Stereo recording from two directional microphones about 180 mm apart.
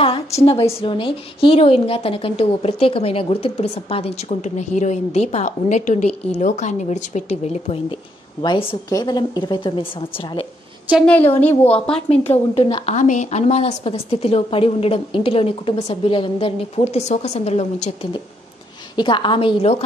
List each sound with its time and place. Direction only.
0.5 s a woman's voice: 35° left (ahead or behind)
11.4 s a woman's voice: 5° left (ahead or behind)
12.1 s a woman's voice: 35° left (ahead or behind)
18.9 s a woman's voice: 25° left (ahead or behind)